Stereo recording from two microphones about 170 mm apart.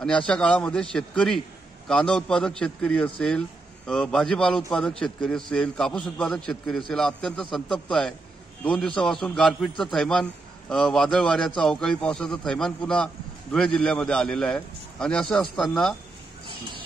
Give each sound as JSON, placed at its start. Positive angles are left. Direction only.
{"t": 0.3, "sound": "a man's voice", "side_deg": 5}